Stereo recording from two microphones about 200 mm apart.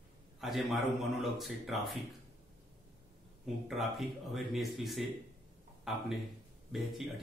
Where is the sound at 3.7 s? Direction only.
Centre (ahead or behind).